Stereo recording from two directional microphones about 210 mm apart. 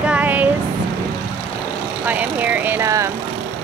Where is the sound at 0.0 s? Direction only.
5° right (ahead or behind).